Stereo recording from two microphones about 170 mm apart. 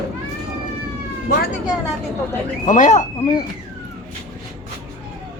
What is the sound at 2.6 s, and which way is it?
Speech, 45° left (ahead or behind).